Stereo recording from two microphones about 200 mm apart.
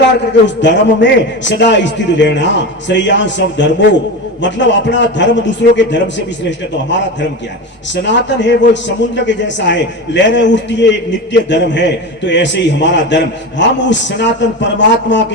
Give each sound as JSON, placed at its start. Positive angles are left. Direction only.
{"t": 0.4, "sound": "a man's voice", "side_deg": 65}